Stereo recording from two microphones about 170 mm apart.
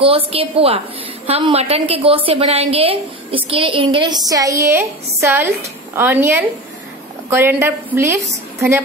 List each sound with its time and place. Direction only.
0.0 s a woman's voice: 35° right (ahead or behind); by 8.8 s 15° right (ahead or behind)